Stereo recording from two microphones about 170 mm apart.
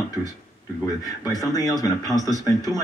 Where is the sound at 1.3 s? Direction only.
20° left (ahead or behind).